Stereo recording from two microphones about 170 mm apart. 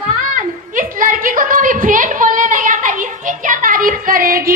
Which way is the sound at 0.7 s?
50° right (ahead or behind).